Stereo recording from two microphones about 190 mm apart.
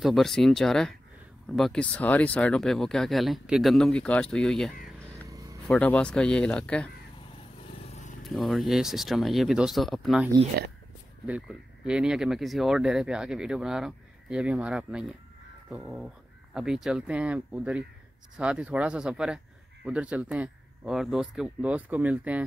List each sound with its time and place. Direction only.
0.0 s speech: centre (ahead or behind)
7.8 s vehicle: 35° left (ahead or behind)
8.2 s speech: centre (ahead or behind)